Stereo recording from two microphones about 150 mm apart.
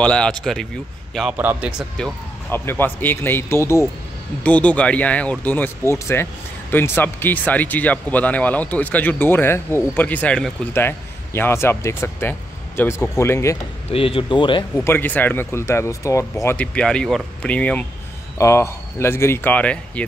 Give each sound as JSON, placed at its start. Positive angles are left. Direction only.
{"t": 0.0, "sound": "speech", "side_deg": 5}
{"t": 1.3, "sound": "speech", "side_deg": -10}
{"t": 2.5, "sound": "speech", "side_deg": 15}
{"t": 13.8, "sound": "speech", "side_deg": 40}
{"t": 14.9, "sound": "speech", "side_deg": 10}
{"t": 16.4, "sound": "speech", "side_deg": 10}